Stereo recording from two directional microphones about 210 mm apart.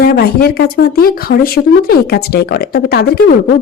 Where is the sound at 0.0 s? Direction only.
45° left (ahead or behind).